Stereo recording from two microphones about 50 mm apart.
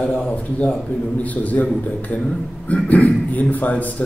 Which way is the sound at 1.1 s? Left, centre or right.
Left.